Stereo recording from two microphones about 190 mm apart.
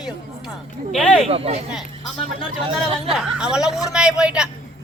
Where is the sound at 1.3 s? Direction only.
30° right (ahead or behind).